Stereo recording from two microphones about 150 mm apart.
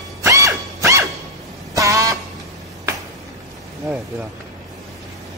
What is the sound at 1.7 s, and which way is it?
Vehicle horn, 20° right (ahead or behind).